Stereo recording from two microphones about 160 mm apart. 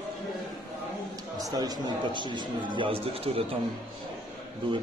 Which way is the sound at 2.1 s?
30° right (ahead or behind).